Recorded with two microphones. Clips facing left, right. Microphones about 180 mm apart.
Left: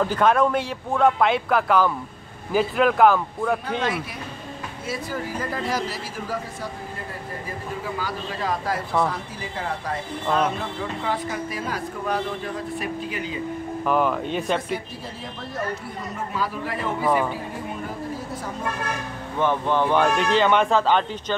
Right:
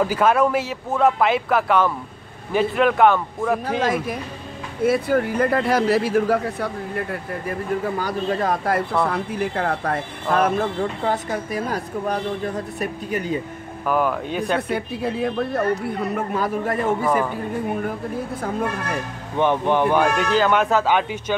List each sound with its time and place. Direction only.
0.0 s speech: 5° right (ahead or behind)
4.8 s speech: 60° right (ahead or behind)
13.8 s speech: 5° right (ahead or behind)
14.7 s speech: 60° right (ahead or behind)
17.0 s speech: centre (ahead or behind)
17.8 s speech: 60° right (ahead or behind)
19.3 s a man's voice: 20° right (ahead or behind)